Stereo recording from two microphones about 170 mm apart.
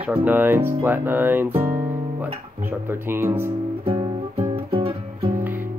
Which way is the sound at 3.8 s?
35° right (ahead or behind).